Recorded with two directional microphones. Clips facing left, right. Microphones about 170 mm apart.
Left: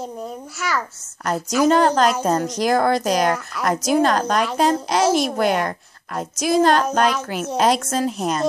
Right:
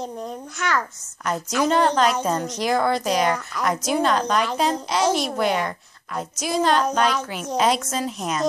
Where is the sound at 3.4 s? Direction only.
5° left (ahead or behind).